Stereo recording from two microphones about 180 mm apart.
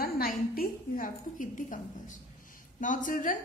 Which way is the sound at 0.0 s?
55° left (ahead or behind).